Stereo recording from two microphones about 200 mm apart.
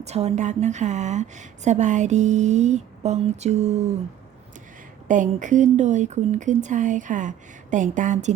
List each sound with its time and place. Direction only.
0.0 s a woman's voice: 35° right (ahead or behind)
5.0 s a woman's voice: 40° right (ahead or behind)